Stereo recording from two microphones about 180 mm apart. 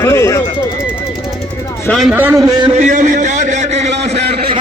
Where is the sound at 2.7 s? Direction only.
45° right (ahead or behind).